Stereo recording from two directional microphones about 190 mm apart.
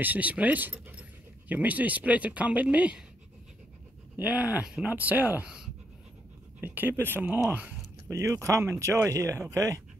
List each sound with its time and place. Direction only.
0.0 s speech: 10° right (ahead or behind)
4.2 s speech: 10° right (ahead or behind)